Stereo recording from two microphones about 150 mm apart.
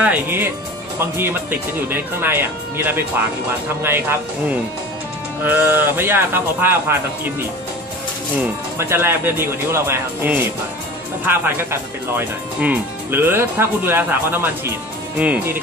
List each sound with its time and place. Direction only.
0.0 s speech: 15° right (ahead or behind)
8.7 s speech: 15° right (ahead or behind)